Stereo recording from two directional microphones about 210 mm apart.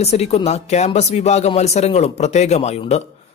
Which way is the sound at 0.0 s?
30° left (ahead or behind).